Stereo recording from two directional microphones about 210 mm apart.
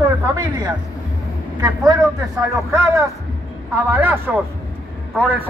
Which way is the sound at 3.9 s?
10° right (ahead or behind).